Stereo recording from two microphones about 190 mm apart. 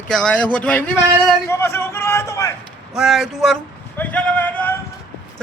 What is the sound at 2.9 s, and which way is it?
Speech, centre (ahead or behind).